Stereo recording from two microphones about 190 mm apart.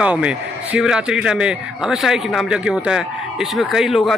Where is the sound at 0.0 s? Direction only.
5° right (ahead or behind).